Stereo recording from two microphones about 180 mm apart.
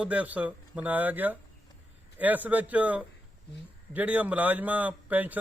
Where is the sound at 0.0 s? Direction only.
10° right (ahead or behind).